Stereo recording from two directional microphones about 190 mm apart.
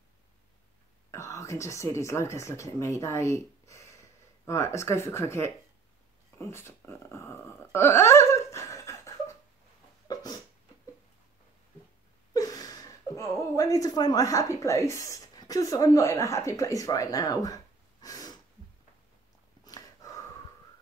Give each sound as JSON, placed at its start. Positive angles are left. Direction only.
{"t": 1.1, "sound": "speech", "side_deg": 15}
{"t": 6.3, "sound": "wail", "side_deg": 15}
{"t": 10.0, "sound": "a sound", "side_deg": 20}
{"t": 12.4, "sound": "speech", "side_deg": 20}
{"t": 18.0, "sound": "a sound", "side_deg": 20}
{"t": 19.6, "sound": "dog", "side_deg": 20}